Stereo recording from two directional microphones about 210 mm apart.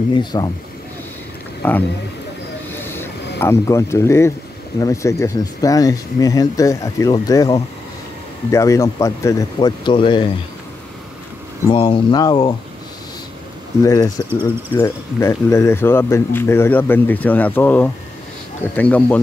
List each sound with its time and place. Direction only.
0.1 s speech: 20° left (ahead or behind)
1.6 s speech: 10° left (ahead or behind)
2.7 s a sound: 10° left (ahead or behind)
4.7 s speech: 15° left (ahead or behind)
11.7 s speech: 20° left (ahead or behind)
13.8 s speech: 15° left (ahead or behind)